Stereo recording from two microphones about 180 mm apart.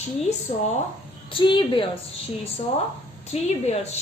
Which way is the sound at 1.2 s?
30° left (ahead or behind).